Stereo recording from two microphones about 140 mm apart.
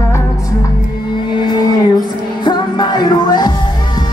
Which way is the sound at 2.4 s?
30° left (ahead or behind).